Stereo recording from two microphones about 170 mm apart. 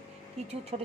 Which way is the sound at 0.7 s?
40° right (ahead or behind).